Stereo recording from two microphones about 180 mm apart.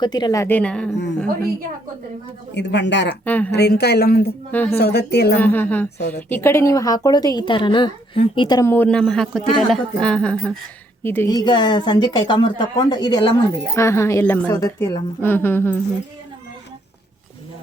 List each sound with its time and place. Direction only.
0.0 s a woman's voice: 25° left (ahead or behind); by 0.9 s 5° left (ahead or behind)
2.6 s speech: 75° left (ahead or behind)
3.2 s a woman's voice: 10° left (ahead or behind)
3.5 s a woman's voice: 65° left (ahead or behind)
4.5 s a woman's voice: 10° left (ahead or behind)
4.8 s a woman's voice: 65° left (ahead or behind)
5.4 s a woman's voice: 10° left (ahead or behind)